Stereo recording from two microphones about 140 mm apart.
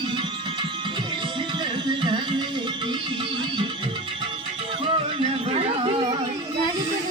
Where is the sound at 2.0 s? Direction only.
35° right (ahead or behind).